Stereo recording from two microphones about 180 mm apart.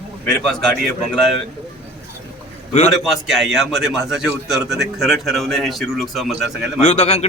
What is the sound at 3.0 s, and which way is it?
A man's voice, centre (ahead or behind).